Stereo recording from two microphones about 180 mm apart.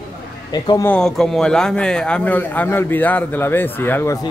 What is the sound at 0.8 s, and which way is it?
A man's voice, 5° left (ahead or behind).